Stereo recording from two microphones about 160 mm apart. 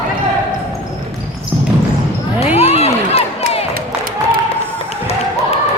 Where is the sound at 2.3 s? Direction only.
40° left (ahead or behind).